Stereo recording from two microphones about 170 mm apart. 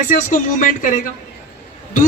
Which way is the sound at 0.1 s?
45° left (ahead or behind).